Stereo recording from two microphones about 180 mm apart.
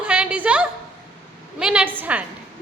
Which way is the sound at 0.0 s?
5° right (ahead or behind).